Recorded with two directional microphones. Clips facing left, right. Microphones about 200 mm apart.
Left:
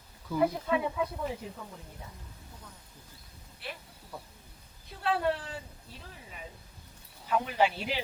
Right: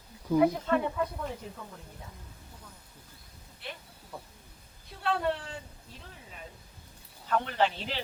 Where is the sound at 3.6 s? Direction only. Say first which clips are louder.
Left 1 dB; 5° left (ahead or behind).